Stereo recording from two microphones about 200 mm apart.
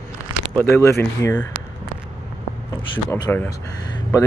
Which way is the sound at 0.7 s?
15° left (ahead or behind).